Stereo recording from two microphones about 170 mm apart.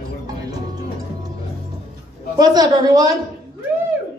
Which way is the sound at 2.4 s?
25° right (ahead or behind).